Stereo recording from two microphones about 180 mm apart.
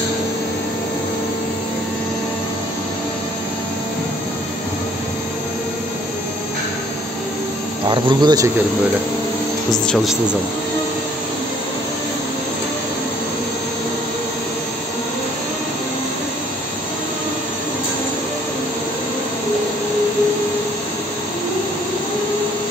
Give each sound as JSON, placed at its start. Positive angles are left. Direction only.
{"t": 7.9, "sound": "speech", "side_deg": -25}
{"t": 9.7, "sound": "speech", "side_deg": 0}